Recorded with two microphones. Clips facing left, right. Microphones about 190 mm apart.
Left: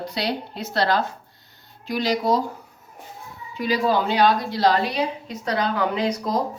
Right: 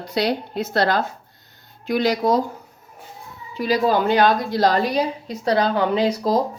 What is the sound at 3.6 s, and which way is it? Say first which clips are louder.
A woman's voice: right 2 dB; 45° right (ahead or behind).